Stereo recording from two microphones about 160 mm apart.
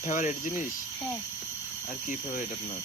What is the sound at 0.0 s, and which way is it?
Speech, 55° left (ahead or behind).